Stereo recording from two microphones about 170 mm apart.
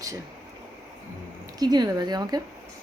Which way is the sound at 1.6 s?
25° right (ahead or behind).